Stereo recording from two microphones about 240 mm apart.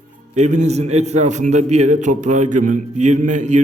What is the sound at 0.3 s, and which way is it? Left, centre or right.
Speech, right.